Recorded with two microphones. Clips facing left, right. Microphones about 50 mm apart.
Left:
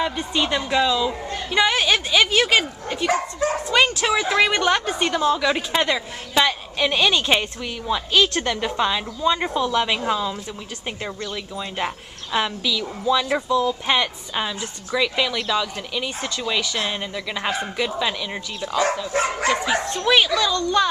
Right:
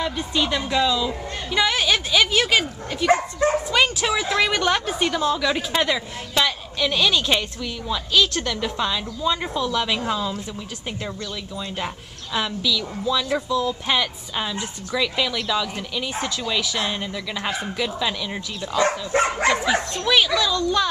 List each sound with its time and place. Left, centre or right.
0.0 s a woman's voice: centre